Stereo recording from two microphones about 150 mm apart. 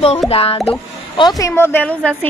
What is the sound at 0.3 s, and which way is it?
Speech, 40° left (ahead or behind).